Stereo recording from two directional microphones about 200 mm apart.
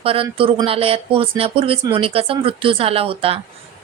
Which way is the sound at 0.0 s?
30° right (ahead or behind).